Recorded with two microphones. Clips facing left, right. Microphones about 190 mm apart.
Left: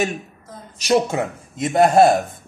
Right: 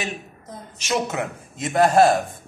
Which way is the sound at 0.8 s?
30° left (ahead or behind).